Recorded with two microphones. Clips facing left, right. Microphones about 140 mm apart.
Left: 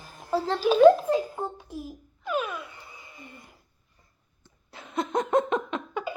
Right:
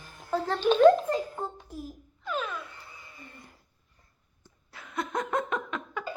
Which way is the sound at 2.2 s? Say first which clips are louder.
Left 4 dB; 10° left (ahead or behind).